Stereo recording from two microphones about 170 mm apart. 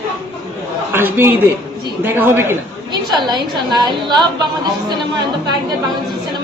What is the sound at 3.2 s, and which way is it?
Speech, 25° right (ahead or behind).